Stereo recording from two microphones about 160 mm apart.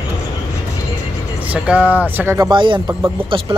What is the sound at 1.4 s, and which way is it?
Speech, 10° right (ahead or behind).